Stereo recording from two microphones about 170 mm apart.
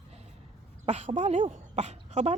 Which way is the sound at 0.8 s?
40° right (ahead or behind).